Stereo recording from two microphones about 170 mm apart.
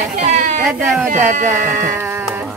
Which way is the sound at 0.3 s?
45° right (ahead or behind).